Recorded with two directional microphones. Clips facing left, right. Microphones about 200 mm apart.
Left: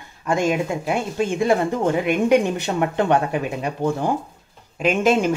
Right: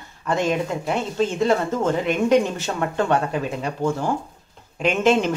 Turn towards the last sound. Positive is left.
turn(degrees=10)  # may be behind; listen again after turning